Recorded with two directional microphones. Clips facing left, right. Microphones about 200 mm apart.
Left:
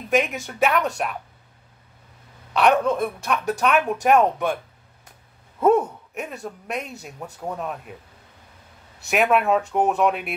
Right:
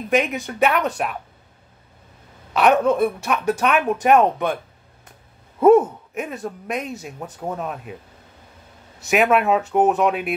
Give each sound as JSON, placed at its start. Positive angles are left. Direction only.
{"t": 0.1, "sound": "speech", "side_deg": 0}
{"t": 2.5, "sound": "speech", "side_deg": -5}
{"t": 5.6, "sound": "speech", "side_deg": -5}
{"t": 9.1, "sound": "speech", "side_deg": 0}